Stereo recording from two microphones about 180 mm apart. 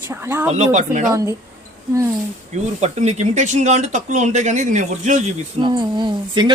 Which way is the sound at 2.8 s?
40° right (ahead or behind).